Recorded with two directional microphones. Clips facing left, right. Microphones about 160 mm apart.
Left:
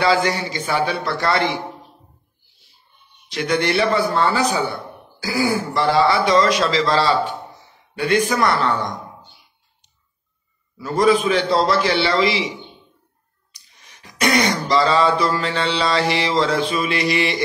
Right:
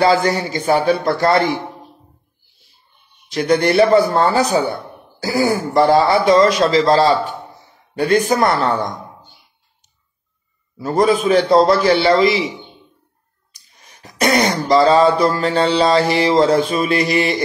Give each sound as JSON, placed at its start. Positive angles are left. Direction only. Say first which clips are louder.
{"t": 0.0, "sound": "throat clearing", "louder": "right 4 dB", "side_deg": -40}
{"t": 3.3, "sound": "throat clearing", "louder": "right 6 dB", "side_deg": -40}
{"t": 10.8, "sound": "throat clearing", "louder": "right 1 dB", "side_deg": -40}
{"t": 13.7, "sound": "throat clearing", "louder": "right 4 dB", "side_deg": -40}